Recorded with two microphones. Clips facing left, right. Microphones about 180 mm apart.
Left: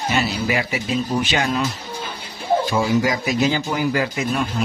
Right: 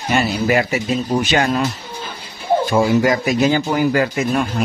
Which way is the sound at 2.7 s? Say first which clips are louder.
Right 4 dB; 55° right (ahead or behind).